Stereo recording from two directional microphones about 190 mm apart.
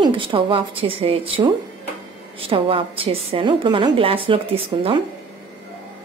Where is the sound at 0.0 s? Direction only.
25° right (ahead or behind).